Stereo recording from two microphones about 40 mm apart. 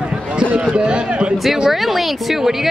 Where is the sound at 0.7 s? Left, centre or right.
Right.